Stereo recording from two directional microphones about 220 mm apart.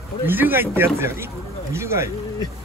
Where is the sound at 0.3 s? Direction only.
10° right (ahead or behind).